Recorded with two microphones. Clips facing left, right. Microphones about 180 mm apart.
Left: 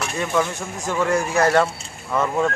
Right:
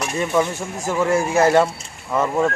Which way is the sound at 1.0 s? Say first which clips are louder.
Right 2 dB; 5° right (ahead or behind).